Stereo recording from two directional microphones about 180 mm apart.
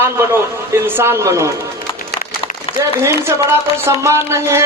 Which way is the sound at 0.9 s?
15° right (ahead or behind).